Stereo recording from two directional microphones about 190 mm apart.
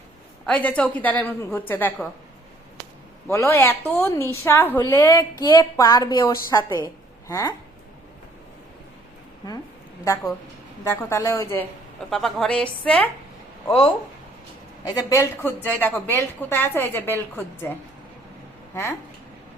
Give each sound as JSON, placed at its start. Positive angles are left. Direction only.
{"t": 0.4, "sound": "a woman's voice", "side_deg": 5}
{"t": 3.2, "sound": "a woman's voice", "side_deg": 15}
{"t": 10.0, "sound": "a woman's voice", "side_deg": 15}
{"t": 12.1, "sound": "a woman's voice", "side_deg": 0}
{"t": 14.8, "sound": "a woman's voice", "side_deg": 15}
{"t": 18.7, "sound": "speech", "side_deg": 15}